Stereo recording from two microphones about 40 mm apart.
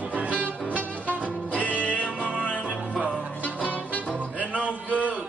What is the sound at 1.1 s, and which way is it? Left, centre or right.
Music, left.